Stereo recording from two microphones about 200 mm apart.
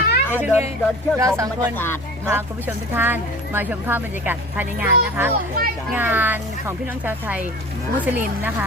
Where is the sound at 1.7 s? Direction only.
10° left (ahead or behind).